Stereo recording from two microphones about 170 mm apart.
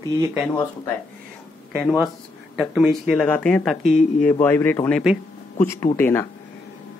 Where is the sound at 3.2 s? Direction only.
10° left (ahead or behind).